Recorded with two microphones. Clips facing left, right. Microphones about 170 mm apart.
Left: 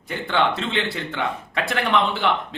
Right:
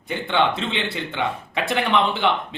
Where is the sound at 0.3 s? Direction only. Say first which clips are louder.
Even; centre (ahead or behind).